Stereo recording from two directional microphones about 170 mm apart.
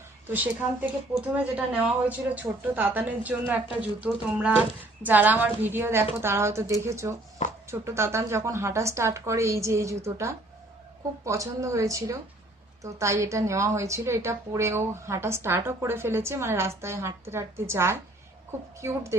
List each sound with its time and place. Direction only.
0.3 s a woman's voice: 10° right (ahead or behind)